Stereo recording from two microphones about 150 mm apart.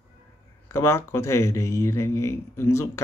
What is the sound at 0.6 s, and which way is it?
Speech, 15° left (ahead or behind).